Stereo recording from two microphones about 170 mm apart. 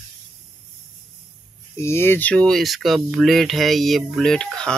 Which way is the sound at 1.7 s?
15° left (ahead or behind).